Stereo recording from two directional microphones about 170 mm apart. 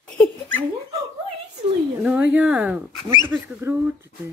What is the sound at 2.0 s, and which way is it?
Speech, 10° right (ahead or behind).